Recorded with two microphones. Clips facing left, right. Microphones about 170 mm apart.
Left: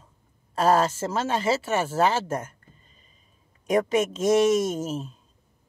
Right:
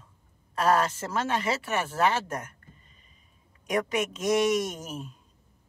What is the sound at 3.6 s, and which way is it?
Speech, 25° left (ahead or behind).